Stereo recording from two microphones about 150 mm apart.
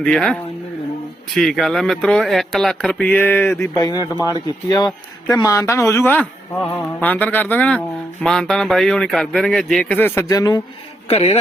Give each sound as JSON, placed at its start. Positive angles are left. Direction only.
{"t": 0.0, "sound": "speech", "side_deg": 5}
{"t": 1.4, "sound": "speech", "side_deg": 5}
{"t": 3.6, "sound": "a man's voice", "side_deg": 25}
{"t": 10.2, "sound": "a man's voice", "side_deg": 25}
{"t": 11.1, "sound": "a man's voice", "side_deg": 45}